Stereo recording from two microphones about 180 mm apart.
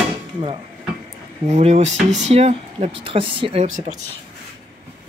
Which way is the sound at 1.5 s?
35° right (ahead or behind).